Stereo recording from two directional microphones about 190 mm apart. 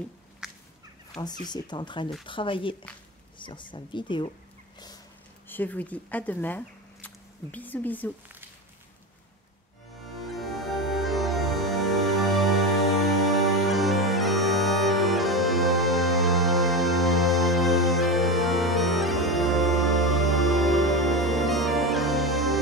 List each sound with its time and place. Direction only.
0.4 s fowl: 5° right (ahead or behind)
1.2 s speech: 20° left (ahead or behind)
5.5 s a woman's voice: 10° left (ahead or behind)
10.2 s music: centre (ahead or behind)